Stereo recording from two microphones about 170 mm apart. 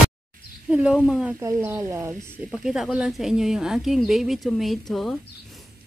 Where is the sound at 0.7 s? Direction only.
5° right (ahead or behind).